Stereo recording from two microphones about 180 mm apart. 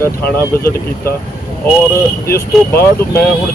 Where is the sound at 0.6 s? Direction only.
55° left (ahead or behind).